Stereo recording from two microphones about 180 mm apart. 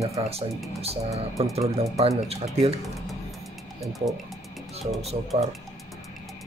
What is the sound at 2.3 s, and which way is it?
Speech, 35° right (ahead or behind).